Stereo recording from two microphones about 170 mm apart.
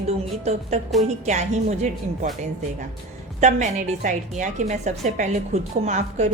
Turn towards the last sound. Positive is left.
turn(degrees=-45)  # may be behind; listen again after turning